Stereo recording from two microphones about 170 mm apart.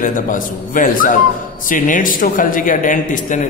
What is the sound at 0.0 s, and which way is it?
Speech, 50° left (ahead or behind).